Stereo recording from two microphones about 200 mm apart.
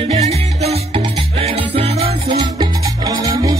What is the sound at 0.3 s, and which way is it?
Music, 30° right (ahead or behind).